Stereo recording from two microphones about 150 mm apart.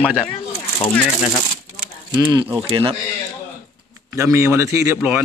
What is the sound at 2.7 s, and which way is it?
Speech, 35° right (ahead or behind).